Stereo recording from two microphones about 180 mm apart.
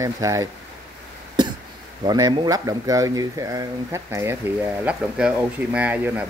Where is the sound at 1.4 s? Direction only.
25° right (ahead or behind).